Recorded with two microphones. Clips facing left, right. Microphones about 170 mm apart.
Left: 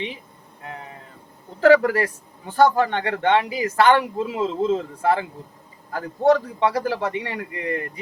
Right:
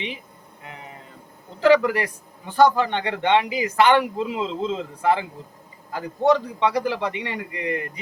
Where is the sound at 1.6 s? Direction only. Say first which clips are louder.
Left 2 dB; 20° right (ahead or behind).